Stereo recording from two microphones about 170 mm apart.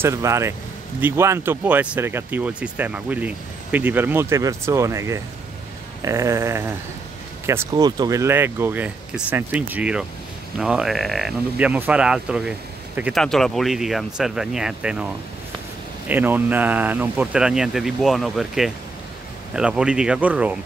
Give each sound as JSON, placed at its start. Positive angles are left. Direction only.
{"t": 0.0, "sound": "speech", "side_deg": -15}
{"t": 16.1, "sound": "speech", "side_deg": -10}